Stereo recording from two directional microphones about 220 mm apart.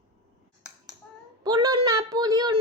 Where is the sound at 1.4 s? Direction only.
20° right (ahead or behind).